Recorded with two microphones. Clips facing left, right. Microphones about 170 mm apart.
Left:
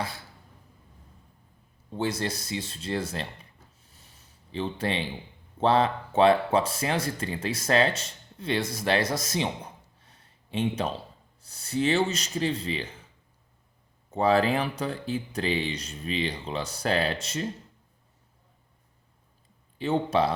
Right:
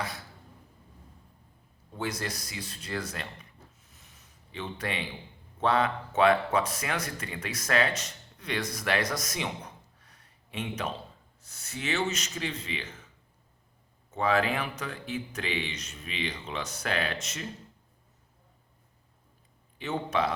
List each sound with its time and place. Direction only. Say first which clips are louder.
1.9 s speech: left 5 dB; 30° left (ahead or behind)
3.8 s a sound: left 1 dB; 30° left (ahead or behind)
5.5 s speech: left 4 dB; 30° left (ahead or behind)
10.0 s a sound: left 2 dB; 30° left (ahead or behind)
11.4 s speech: left 9 dB; 30° left (ahead or behind)
14.1 s speech: left 4 dB; 35° left (ahead or behind)
19.8 s speech: left 5 dB; 30° left (ahead or behind)